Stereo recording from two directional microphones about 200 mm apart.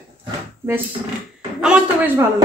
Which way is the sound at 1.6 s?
5° right (ahead or behind).